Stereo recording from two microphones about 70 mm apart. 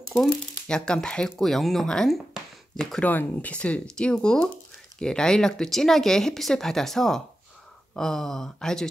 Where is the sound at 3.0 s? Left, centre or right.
Left; by 8.8 s centre.